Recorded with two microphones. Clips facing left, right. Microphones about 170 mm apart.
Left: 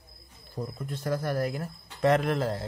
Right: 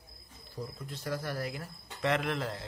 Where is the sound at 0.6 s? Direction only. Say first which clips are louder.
Left 6 dB; 50° left (ahead or behind).